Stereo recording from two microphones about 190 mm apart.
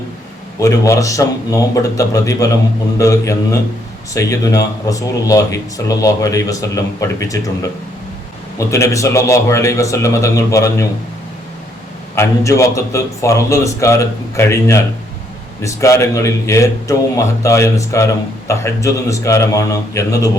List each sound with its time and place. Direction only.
0.6 s a man's voice: 15° left (ahead or behind)
8.5 s a man's voice: 15° left (ahead or behind)
12.1 s a man's voice: 15° left (ahead or behind)